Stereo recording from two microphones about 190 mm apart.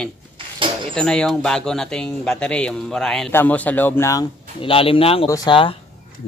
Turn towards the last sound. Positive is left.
turn(degrees=25)  # may be behind; listen again after turning